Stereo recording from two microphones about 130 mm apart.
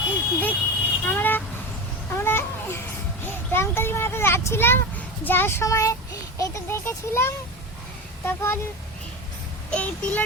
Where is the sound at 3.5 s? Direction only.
15° left (ahead or behind).